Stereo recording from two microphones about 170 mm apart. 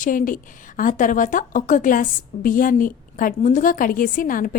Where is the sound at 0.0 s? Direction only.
50° left (ahead or behind).